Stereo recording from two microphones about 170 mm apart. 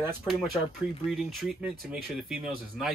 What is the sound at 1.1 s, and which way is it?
Speech, centre (ahead or behind).